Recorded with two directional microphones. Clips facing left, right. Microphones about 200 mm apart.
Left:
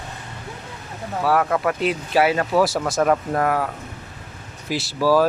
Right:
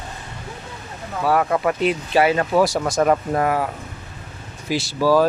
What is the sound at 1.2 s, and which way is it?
Speech, centre (ahead or behind).